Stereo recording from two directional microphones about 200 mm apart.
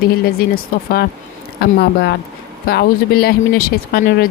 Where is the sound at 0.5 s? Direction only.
50° left (ahead or behind).